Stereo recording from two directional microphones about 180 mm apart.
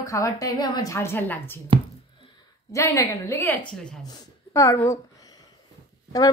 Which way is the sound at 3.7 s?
5° left (ahead or behind).